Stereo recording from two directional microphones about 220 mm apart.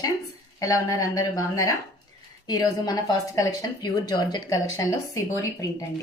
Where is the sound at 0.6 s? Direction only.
15° left (ahead or behind).